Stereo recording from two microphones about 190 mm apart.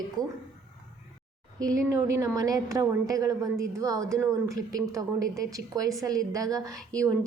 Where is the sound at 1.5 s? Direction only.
15° right (ahead or behind).